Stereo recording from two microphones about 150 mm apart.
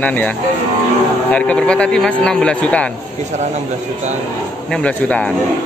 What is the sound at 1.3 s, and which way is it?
Speech, 5° left (ahead or behind).